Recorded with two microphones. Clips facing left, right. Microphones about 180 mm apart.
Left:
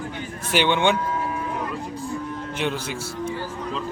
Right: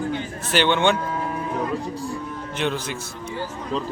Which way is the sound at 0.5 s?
15° left (ahead or behind).